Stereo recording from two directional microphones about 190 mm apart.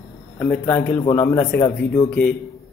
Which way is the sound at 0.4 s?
10° left (ahead or behind).